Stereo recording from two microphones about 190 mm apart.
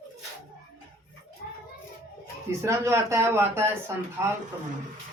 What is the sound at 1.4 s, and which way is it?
Child singing, 55° left (ahead or behind).